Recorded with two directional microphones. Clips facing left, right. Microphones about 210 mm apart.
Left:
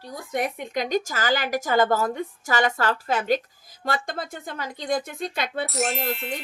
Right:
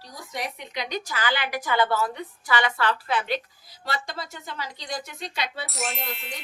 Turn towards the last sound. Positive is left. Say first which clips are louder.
# left 6 dB
turn(degrees=0)  # may be behind; listen again after turning